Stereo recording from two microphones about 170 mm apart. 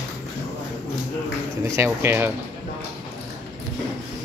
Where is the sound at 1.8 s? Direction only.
15° right (ahead or behind).